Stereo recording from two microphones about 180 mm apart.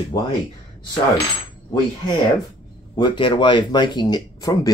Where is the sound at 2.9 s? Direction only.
25° left (ahead or behind).